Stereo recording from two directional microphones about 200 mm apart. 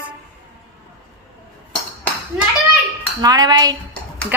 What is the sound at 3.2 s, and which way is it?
Dishes, 20° right (ahead or behind).